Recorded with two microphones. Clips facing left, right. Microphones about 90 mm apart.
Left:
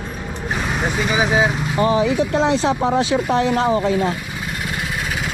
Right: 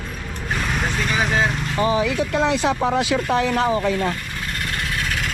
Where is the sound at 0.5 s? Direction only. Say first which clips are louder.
Left 2 dB; 10° left (ahead or behind).